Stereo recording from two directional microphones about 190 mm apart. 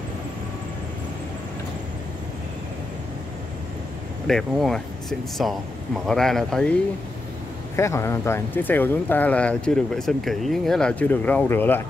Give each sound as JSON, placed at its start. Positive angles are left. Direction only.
{"t": 4.3, "sound": "speech", "side_deg": 0}
{"t": 7.7, "sound": "speech", "side_deg": 15}